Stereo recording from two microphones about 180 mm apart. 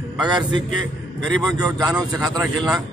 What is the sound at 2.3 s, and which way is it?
Speech, 20° right (ahead or behind).